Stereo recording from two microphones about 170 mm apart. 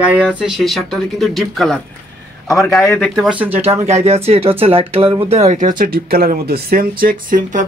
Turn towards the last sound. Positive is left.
turn(degrees=-50)  # may be behind; listen again after turning